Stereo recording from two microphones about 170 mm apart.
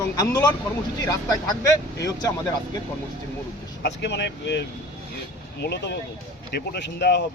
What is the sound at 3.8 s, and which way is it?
Speech, 90° left.